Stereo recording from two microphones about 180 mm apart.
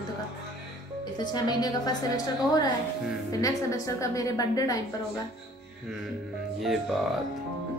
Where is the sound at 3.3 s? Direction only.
20° left (ahead or behind).